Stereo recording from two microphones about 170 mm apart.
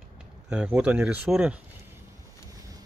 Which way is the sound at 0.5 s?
5° right (ahead or behind).